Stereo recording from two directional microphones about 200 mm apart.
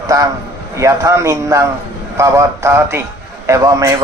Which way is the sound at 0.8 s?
15° right (ahead or behind).